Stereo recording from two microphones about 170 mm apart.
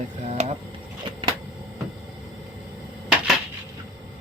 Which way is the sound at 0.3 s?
40° right (ahead or behind).